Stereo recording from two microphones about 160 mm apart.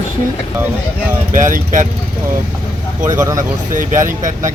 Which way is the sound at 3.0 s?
20° right (ahead or behind).